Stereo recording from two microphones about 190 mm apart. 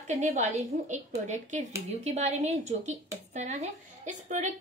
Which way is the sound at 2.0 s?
35° right (ahead or behind).